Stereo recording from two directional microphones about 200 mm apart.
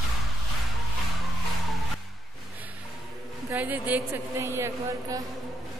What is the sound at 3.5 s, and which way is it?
Speech, 10° right (ahead or behind).